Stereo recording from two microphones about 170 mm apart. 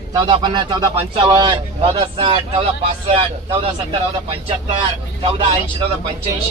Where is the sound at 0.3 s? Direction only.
25° right (ahead or behind).